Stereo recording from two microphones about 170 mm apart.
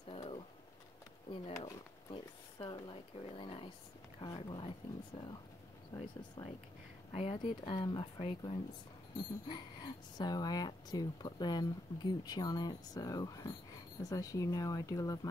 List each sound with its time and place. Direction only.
0.1 s a sound: 35° left (ahead or behind)
1.3 s speech: 35° left (ahead or behind)
10.1 s speech: 25° left (ahead or behind)